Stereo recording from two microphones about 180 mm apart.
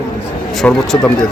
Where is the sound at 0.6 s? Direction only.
5° left (ahead or behind).